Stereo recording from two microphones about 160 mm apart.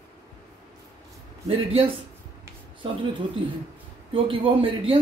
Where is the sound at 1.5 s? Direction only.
35° right (ahead or behind).